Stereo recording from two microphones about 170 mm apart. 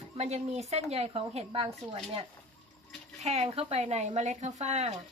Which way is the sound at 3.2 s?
40° right (ahead or behind).